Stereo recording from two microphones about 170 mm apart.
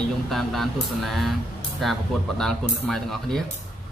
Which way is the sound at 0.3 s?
Centre (ahead or behind).